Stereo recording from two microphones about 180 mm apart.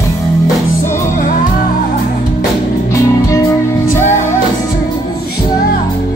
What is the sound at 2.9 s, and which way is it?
Music, 15° left (ahead or behind).